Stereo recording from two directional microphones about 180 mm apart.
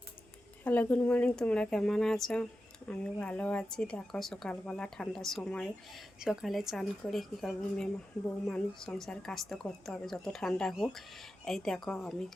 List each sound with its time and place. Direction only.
0.6 s speech: 10° left (ahead or behind)